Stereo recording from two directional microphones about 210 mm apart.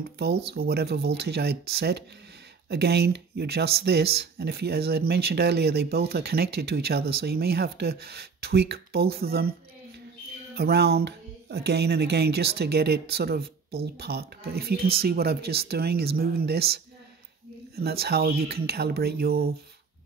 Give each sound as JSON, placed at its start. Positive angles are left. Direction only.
{"t": 0.6, "sound": "speech", "side_deg": -50}
{"t": 10.5, "sound": "speech", "side_deg": -50}